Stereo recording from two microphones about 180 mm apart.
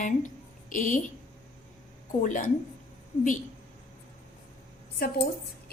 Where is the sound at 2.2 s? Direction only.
45° left (ahead or behind).